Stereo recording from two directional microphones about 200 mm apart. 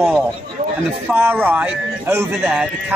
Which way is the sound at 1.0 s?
10° right (ahead or behind).